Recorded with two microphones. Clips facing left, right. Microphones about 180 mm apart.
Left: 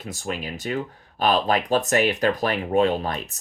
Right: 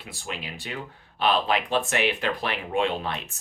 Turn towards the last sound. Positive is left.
turn(degrees=40)  # may be behind; listen again after turning